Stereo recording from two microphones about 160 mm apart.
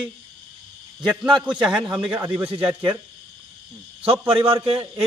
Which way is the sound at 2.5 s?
35° right (ahead or behind).